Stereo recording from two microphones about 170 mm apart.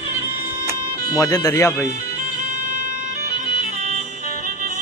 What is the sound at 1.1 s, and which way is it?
Speech, 20° left (ahead or behind).